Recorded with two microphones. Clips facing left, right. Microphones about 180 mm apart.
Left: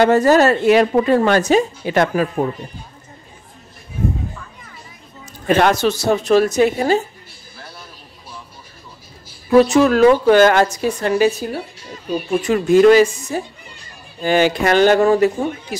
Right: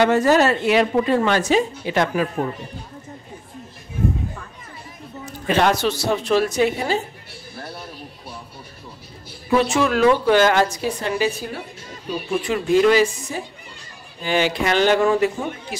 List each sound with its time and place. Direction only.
0.0 s a woman's voice: 40° left (ahead or behind)
5.2 s a woman's voice: 45° left (ahead or behind)
9.6 s a woman's voice: 40° left (ahead or behind)
12.4 s a woman's voice: 45° left (ahead or behind)